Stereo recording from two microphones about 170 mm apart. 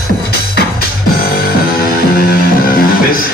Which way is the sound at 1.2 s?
65° left (ahead or behind).